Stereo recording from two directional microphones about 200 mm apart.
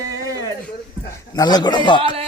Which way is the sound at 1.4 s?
20° left (ahead or behind).